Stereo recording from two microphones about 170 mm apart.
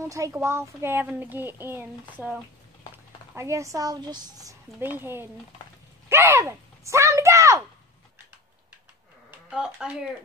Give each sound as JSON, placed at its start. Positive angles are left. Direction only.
{"t": 0.0, "sound": "speech", "side_deg": -15}
{"t": 3.3, "sound": "speech", "side_deg": -15}
{"t": 9.5, "sound": "speech", "side_deg": -5}